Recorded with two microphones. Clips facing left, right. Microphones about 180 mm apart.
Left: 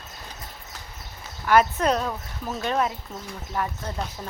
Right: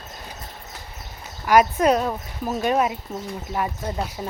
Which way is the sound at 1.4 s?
10° right (ahead or behind).